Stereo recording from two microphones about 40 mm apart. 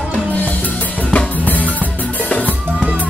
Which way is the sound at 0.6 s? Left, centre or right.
Left.